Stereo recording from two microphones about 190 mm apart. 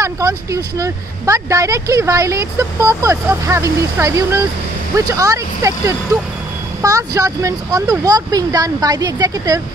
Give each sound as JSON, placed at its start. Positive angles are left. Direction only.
{"t": 0.0, "sound": "speech", "side_deg": -15}